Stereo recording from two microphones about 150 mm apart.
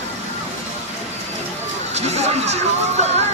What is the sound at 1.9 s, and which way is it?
Speech, 45° right (ahead or behind).